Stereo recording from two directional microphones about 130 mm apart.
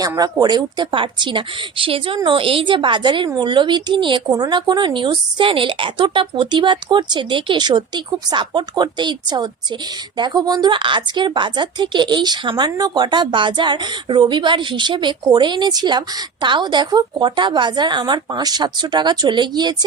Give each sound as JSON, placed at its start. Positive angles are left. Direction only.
{"t": 0.2, "sound": "a woman's voice", "side_deg": -30}